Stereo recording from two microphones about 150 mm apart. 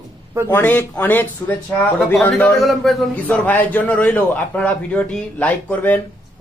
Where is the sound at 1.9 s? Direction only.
Centre (ahead or behind).